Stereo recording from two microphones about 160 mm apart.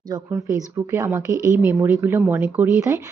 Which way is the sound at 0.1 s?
20° right (ahead or behind).